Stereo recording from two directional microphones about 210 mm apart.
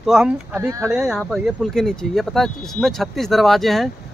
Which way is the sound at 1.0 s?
Centre (ahead or behind).